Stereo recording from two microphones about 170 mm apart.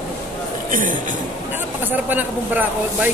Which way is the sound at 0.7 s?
50° right (ahead or behind).